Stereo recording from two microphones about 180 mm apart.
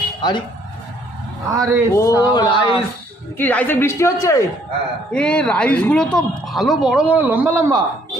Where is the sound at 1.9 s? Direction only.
15° left (ahead or behind).